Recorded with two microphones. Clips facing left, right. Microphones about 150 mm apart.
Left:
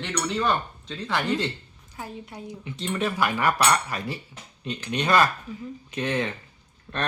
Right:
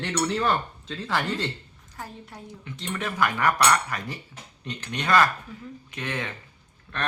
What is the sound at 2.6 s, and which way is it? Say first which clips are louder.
Speech: left 5 dB; 30° left (ahead or behind).